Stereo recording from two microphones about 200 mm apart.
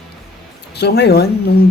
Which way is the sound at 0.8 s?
55° left (ahead or behind).